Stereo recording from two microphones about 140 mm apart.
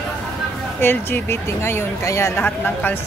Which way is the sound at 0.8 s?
15° left (ahead or behind).